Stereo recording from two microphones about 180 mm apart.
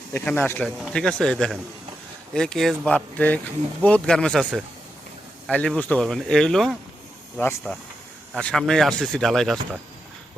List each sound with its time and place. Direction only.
0.1 s speech: 10° left (ahead or behind)